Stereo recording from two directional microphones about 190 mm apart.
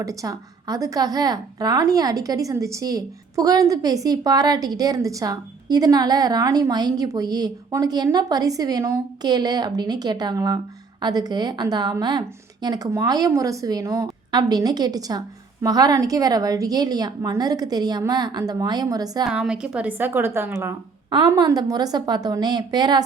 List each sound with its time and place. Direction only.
0.0 s a woman's voice: 15° right (ahead or behind)
19.3 s a woman's voice: 5° right (ahead or behind)
21.1 s a woman's voice: 20° right (ahead or behind)